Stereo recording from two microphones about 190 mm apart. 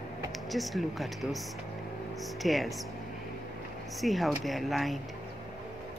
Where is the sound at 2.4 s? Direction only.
Centre (ahead or behind).